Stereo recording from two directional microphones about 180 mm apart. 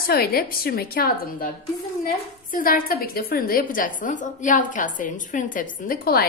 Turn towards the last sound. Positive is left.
turn(degrees=55)  # may be behind; listen again after turning